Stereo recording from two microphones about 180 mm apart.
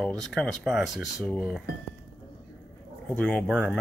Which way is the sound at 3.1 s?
10° left (ahead or behind).